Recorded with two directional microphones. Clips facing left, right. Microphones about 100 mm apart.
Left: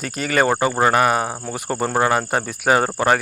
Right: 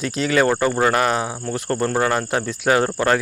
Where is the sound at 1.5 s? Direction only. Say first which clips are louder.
Right 2 dB; 5° left (ahead or behind).